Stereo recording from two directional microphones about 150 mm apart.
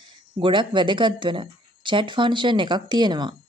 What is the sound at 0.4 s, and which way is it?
A woman's voice, 30° right (ahead or behind).